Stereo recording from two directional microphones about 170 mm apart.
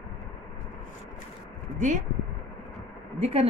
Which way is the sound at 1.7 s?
45° right (ahead or behind).